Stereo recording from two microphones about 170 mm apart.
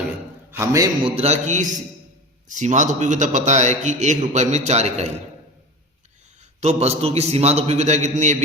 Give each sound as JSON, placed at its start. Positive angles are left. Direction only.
{"t": 0.6, "sound": "a man's voice", "side_deg": -20}
{"t": 1.0, "sound": "a man's voice", "side_deg": -35}
{"t": 6.6, "sound": "a man's voice", "side_deg": -40}